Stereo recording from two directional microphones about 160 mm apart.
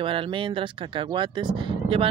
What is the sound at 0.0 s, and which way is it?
Speech, 35° right (ahead or behind).